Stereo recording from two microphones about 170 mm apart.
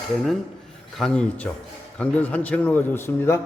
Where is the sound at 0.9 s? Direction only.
5° left (ahead or behind).